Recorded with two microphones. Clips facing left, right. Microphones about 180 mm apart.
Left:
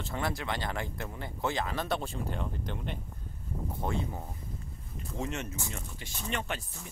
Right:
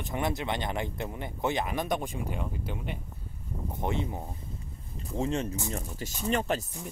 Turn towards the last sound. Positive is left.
turn(degrees=-35)  # may be behind; listen again after turning